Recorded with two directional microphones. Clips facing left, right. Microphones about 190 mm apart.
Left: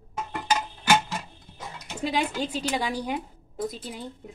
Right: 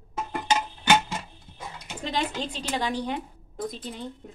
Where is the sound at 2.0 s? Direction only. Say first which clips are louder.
Left 2 dB; 10° left (ahead or behind).